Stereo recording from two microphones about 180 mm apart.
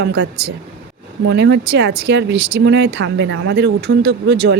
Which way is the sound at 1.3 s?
70° right (ahead or behind).